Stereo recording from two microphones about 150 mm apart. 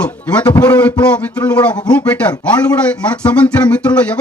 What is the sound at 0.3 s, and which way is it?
Speech, 10° left (ahead or behind).